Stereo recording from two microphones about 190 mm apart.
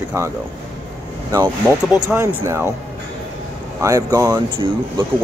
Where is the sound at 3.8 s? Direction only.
15° right (ahead or behind).